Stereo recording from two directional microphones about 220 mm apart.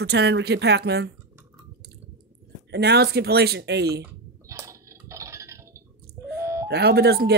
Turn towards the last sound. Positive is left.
turn(degrees=-45)  # may be behind; listen again after turning